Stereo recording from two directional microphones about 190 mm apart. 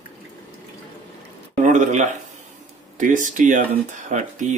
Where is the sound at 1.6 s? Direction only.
40° right (ahead or behind).